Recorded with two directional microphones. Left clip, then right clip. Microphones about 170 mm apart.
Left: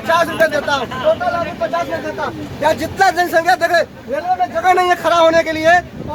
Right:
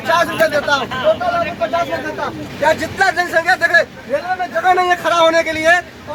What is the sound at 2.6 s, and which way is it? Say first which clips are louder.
Speech: left 1 dB; 65° left (ahead or behind).